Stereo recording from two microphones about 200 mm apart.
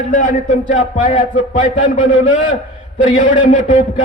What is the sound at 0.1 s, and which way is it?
A man's voice, 40° left (ahead or behind).